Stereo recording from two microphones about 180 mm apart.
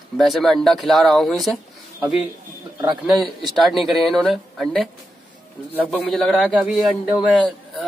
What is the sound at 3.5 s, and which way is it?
Speech, centre (ahead or behind).